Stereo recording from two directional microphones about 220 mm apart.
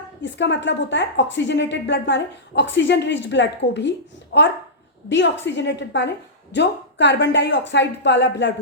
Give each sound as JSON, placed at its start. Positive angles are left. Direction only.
{"t": 0.2, "sound": "a woman's voice", "side_deg": 55}